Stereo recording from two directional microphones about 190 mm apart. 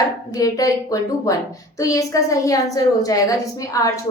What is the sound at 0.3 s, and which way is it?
A woman's voice, 15° left (ahead or behind).